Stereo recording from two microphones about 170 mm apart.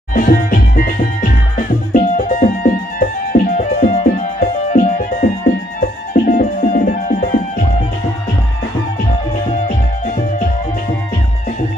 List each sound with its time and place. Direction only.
0.1 s music: 55° left (ahead or behind)
6.1 s music: 50° left (ahead or behind)